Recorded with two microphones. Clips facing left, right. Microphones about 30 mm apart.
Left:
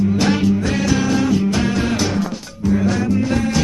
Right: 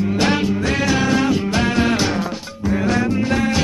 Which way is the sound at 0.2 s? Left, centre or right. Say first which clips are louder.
Left 1 dB; centre.